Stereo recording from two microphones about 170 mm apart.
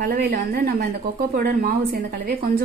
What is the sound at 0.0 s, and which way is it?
A woman's voice, 65° right (ahead or behind).